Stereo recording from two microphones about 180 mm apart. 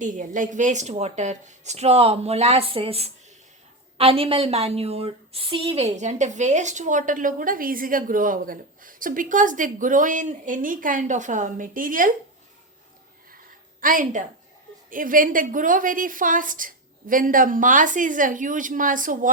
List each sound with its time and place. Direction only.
0.0 s a woman's voice: 45° right (ahead or behind)
13.8 s a woman's voice: 45° right (ahead or behind)